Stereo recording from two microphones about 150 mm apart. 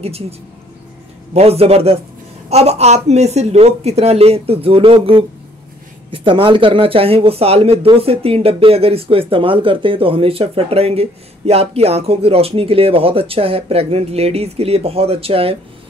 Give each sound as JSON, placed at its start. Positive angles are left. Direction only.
{"t": 1.3, "sound": "a woman's voice", "side_deg": -40}